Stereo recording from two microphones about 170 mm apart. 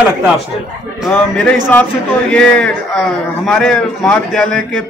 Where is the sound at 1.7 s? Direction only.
10° left (ahead or behind).